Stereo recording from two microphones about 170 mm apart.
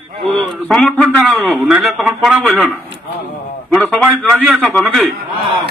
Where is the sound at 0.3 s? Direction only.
5° left (ahead or behind).